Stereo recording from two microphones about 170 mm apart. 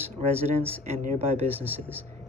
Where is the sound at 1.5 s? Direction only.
10° right (ahead or behind).